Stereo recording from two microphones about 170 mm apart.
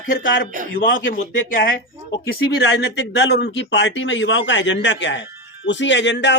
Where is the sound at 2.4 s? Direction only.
70° left (ahead or behind).